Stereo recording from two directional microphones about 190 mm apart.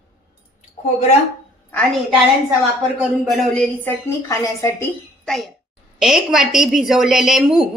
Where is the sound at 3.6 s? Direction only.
10° left (ahead or behind).